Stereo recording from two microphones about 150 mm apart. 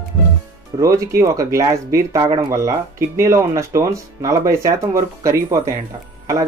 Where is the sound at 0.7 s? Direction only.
20° right (ahead or behind).